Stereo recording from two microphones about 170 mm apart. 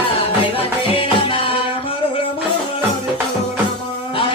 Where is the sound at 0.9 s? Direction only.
30° left (ahead or behind).